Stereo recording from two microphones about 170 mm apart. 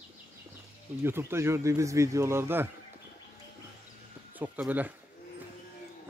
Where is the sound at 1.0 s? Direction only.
15° right (ahead or behind).